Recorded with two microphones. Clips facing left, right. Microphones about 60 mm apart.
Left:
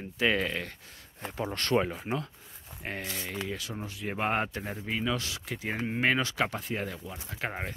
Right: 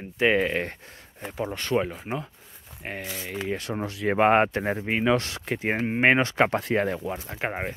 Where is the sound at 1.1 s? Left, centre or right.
Centre.